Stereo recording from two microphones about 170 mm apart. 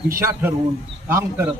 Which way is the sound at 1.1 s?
15° right (ahead or behind).